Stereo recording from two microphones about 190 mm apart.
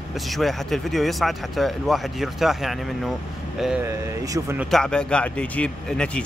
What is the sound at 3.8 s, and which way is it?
Speech, 15° right (ahead or behind).